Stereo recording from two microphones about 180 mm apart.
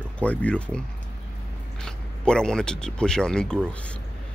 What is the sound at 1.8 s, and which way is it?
Speech, 5° left (ahead or behind).